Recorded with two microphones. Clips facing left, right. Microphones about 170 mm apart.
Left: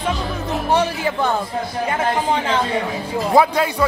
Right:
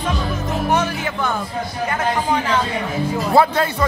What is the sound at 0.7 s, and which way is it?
Music, 30° left (ahead or behind).